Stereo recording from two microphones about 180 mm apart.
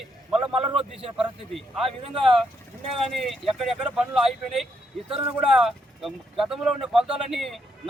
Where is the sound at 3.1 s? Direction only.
Centre (ahead or behind).